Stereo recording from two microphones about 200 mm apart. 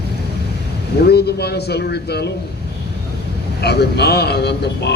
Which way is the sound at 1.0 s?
55° left (ahead or behind).